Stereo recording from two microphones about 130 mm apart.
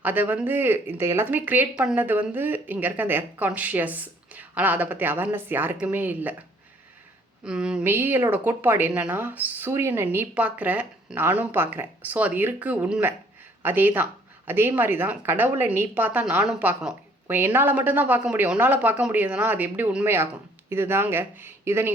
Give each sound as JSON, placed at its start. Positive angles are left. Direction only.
{"t": 0.0, "sound": "a woman's voice", "side_deg": -15}
{"t": 7.4, "sound": "a woman's voice", "side_deg": -5}